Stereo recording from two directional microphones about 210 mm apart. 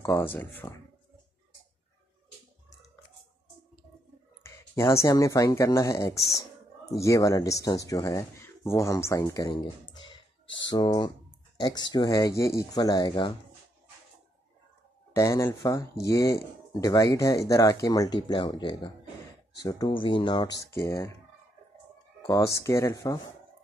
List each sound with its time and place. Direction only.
0.0 s speech: 10° left (ahead or behind)
4.7 s speech: 15° left (ahead or behind)
15.1 s speech: 15° left (ahead or behind)
22.2 s speech: 15° left (ahead or behind)